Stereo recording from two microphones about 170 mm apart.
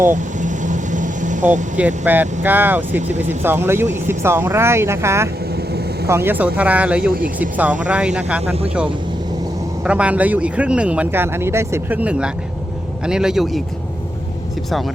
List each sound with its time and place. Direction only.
0.1 s vehicle: 45° right (ahead or behind)
2.0 s speech: 10° right (ahead or behind)
9.8 s a man's voice: 5° right (ahead or behind)